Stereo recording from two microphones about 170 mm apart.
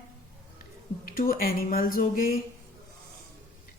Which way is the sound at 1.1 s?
55° left (ahead or behind).